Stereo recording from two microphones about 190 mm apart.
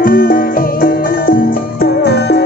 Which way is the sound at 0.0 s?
50° left (ahead or behind).